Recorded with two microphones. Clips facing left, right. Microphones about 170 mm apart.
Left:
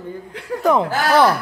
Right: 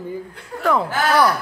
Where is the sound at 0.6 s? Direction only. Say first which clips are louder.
Left 3 dB; 20° left (ahead or behind).